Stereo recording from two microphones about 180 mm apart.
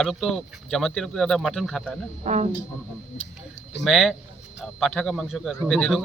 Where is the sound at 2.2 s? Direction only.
40° right (ahead or behind).